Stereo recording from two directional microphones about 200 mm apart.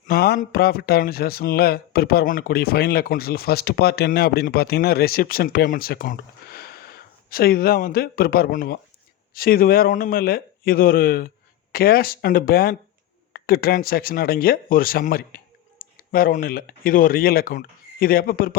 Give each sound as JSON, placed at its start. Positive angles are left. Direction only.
{"t": 0.1, "sound": "speech", "side_deg": 50}